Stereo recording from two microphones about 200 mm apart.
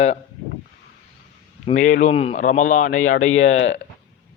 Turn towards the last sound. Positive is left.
turn(degrees=35)  # may be behind; listen again after turning